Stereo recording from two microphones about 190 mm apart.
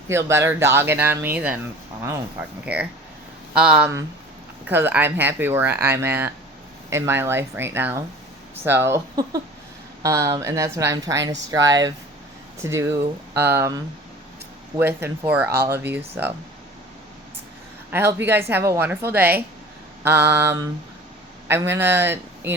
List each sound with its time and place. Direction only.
0.1 s a woman's voice: 15° right (ahead or behind)
3.5 s a woman's voice: 5° right (ahead or behind)
17.9 s a woman's voice: 10° right (ahead or behind)